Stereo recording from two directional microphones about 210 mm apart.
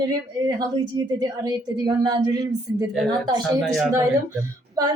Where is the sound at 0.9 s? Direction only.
20° right (ahead or behind).